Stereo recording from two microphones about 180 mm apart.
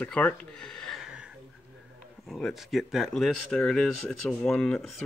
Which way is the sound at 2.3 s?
Centre (ahead or behind).